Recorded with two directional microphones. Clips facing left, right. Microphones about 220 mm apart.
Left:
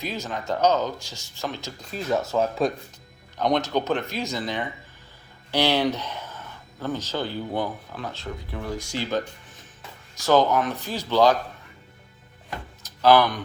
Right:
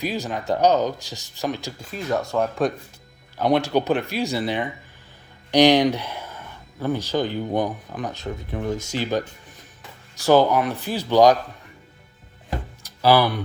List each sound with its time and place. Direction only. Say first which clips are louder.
0.0 s speech: right 4 dB; 15° right (ahead or behind)
1.9 s speech: even; centre (ahead or behind); by 9.2 s 15° right (ahead or behind)
10.2 s speech: right 3 dB; 10° right (ahead or behind)
12.8 s music: even; 10° right (ahead or behind)